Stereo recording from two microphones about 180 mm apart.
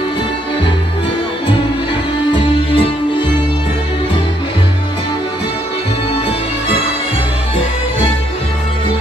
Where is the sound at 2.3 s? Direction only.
30° left (ahead or behind).